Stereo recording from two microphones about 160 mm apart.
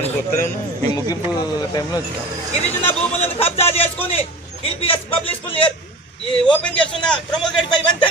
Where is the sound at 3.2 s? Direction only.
40° left (ahead or behind).